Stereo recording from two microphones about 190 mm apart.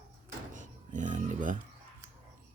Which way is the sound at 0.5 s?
40° right (ahead or behind).